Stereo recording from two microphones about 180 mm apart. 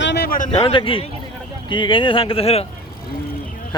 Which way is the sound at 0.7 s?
30° left (ahead or behind).